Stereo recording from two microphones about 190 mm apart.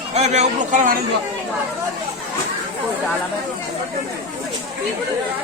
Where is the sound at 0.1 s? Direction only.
35° right (ahead or behind).